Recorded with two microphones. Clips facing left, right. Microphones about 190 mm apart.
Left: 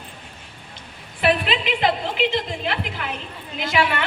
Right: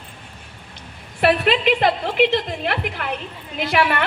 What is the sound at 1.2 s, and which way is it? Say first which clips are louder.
A woman's voice: right 4 dB; 55° right (ahead or behind).